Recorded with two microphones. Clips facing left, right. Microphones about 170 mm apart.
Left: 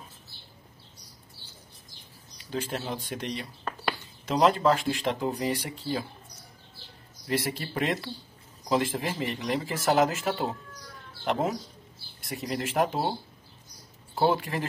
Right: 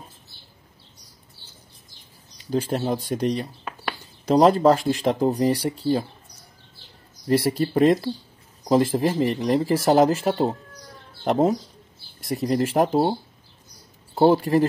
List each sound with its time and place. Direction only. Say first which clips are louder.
2.5 s speech: right 9 dB; 40° right (ahead or behind)
7.2 s speech: right 9 dB; 40° right (ahead or behind)
14.1 s speech: right 9 dB; 40° right (ahead or behind)